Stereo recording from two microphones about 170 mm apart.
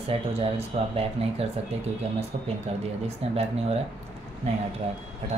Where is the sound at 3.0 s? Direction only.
40° right (ahead or behind).